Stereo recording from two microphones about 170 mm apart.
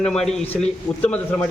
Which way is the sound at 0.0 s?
5° left (ahead or behind).